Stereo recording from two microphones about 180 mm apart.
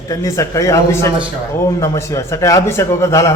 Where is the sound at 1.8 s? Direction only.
15° left (ahead or behind).